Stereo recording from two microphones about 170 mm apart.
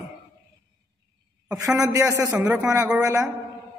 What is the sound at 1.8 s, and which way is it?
Speech, 20° right (ahead or behind).